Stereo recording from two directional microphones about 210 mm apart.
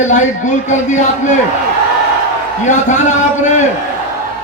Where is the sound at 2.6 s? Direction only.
35° left (ahead or behind).